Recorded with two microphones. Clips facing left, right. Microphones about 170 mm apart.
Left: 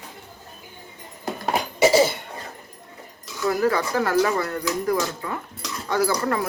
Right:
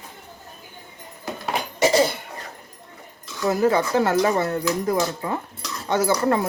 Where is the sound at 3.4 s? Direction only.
20° right (ahead or behind).